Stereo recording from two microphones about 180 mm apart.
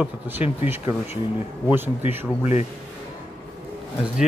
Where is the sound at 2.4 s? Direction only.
40° left (ahead or behind).